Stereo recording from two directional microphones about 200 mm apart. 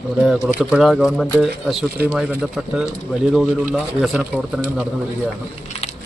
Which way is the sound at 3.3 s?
5° right (ahead or behind).